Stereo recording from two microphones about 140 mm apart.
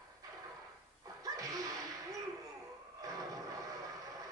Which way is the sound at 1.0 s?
25° right (ahead or behind).